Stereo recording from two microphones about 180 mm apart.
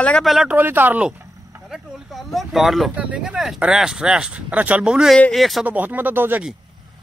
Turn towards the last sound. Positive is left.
turn(degrees=-10)  # may be behind; listen again after turning